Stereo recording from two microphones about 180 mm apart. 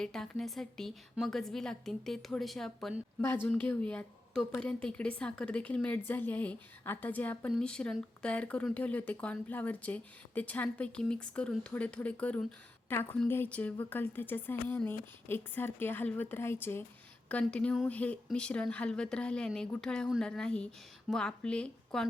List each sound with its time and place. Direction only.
0.0 s speech: 5° left (ahead or behind)